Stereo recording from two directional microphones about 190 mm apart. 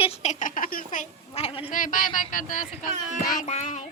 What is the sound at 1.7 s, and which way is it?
Speech, 45° left (ahead or behind).